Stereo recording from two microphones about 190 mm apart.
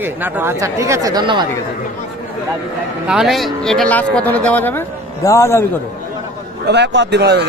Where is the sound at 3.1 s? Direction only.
Centre (ahead or behind); by 5.6 s 15° left (ahead or behind).